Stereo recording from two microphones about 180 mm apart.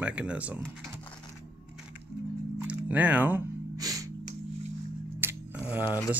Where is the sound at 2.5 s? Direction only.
10° right (ahead or behind).